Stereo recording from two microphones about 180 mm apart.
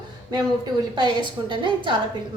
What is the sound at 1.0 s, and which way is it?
Speech, 25° right (ahead or behind).